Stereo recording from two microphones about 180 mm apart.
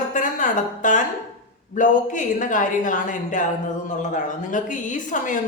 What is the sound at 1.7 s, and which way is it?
A woman's voice, 45° left (ahead or behind).